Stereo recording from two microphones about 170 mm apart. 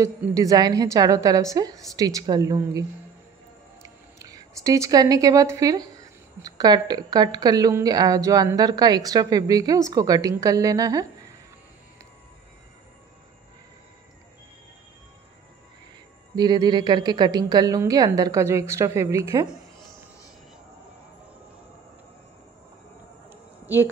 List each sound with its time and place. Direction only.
0.3 s a woman's voice: 20° right (ahead or behind)
3.8 s a woman's voice: 20° right (ahead or behind)
16.3 s a woman's voice: 25° right (ahead or behind)
23.6 s a sound: 10° right (ahead or behind)